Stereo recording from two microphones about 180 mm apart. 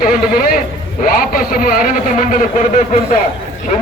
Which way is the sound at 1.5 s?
50° left (ahead or behind).